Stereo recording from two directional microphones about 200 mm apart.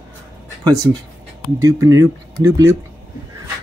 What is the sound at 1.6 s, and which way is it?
Speech, 15° right (ahead or behind).